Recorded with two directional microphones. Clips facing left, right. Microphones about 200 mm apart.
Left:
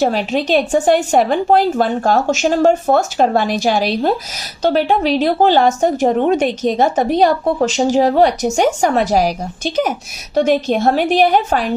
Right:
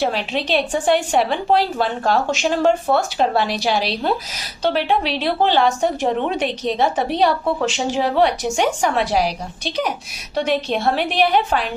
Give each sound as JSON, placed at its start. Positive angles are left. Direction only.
{"t": 0.0, "sound": "a woman's voice", "side_deg": 45}